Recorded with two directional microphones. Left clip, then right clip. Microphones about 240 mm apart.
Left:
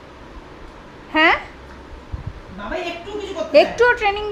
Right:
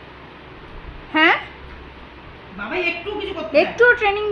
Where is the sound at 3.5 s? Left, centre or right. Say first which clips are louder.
Left 1 dB; centre.